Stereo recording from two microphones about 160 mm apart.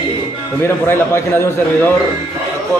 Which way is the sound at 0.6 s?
15° left (ahead or behind).